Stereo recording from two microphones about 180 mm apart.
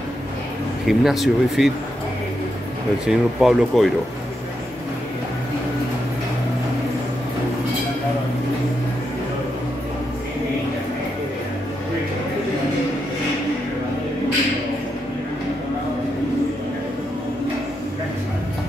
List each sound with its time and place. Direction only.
0.8 s speech: centre (ahead or behind)
3.1 s speech: centre (ahead or behind)